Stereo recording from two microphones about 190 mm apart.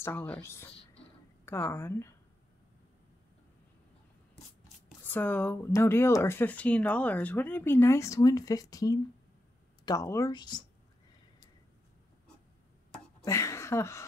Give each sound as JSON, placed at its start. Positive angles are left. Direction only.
{"t": 0.0, "sound": "speech", "side_deg": 10}
{"t": 5.0, "sound": "speech", "side_deg": 10}
{"t": 13.2, "sound": "speech", "side_deg": 15}